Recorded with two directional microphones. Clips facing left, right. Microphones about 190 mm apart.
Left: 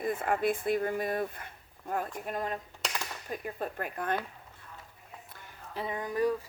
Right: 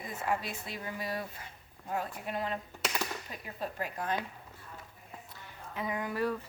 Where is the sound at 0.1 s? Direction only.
55° left (ahead or behind).